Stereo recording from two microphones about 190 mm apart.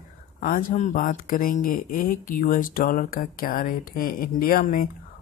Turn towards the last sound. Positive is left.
turn(degrees=50)  # may be behind; listen again after turning